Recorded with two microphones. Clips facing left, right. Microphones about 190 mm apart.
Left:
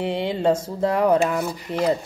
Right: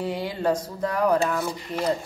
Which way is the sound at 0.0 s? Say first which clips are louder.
Left 4 dB; 25° left (ahead or behind).